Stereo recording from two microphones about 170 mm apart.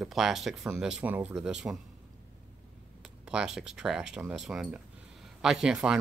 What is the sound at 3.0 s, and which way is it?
Speech, 5° right (ahead or behind).